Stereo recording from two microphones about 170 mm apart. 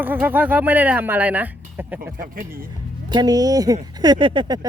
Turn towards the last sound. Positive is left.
turn(degrees=-30)  # may be behind; listen again after turning